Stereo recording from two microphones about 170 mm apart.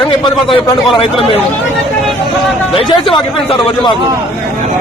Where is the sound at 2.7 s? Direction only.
30° left (ahead or behind).